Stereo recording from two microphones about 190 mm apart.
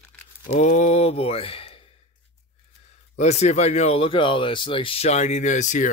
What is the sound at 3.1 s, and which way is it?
Speech, 35° left (ahead or behind).